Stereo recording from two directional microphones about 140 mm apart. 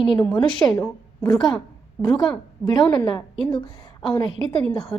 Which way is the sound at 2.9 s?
30° left (ahead or behind).